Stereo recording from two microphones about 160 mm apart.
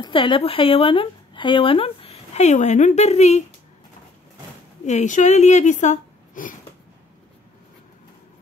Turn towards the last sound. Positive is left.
turn(degrees=55)  # may be behind; listen again after turning